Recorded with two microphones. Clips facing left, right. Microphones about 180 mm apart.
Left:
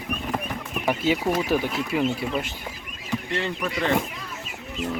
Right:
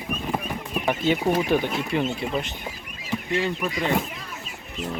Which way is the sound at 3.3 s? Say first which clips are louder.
Right 3 dB; 10° right (ahead or behind).